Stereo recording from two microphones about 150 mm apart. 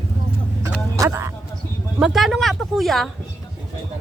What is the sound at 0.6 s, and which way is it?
Vehicle, 20° right (ahead or behind).